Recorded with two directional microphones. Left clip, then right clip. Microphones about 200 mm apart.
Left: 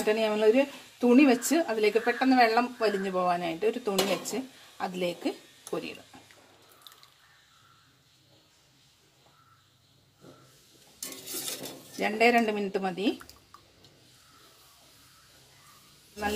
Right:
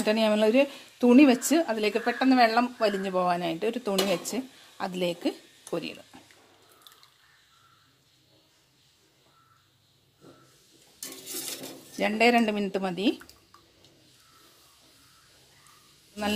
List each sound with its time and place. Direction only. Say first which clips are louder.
0.0 s speech: right 1 dB; 50° right (ahead or behind)
12.0 s speech: right 1 dB; 50° right (ahead or behind)